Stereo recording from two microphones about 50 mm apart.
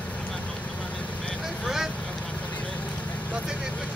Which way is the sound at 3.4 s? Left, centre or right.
Centre.